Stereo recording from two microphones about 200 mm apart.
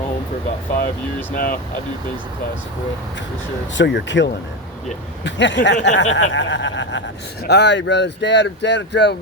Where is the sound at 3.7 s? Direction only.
60° left (ahead or behind).